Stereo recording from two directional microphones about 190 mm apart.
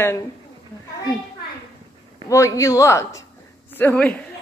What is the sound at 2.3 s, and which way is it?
A woman's voice, 15° left (ahead or behind).